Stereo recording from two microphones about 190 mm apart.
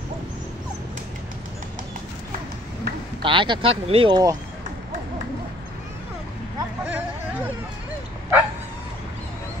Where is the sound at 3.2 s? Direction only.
25° right (ahead or behind).